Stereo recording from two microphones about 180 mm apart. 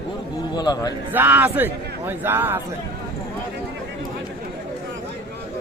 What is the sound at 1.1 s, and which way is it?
A man's voice, 10° right (ahead or behind).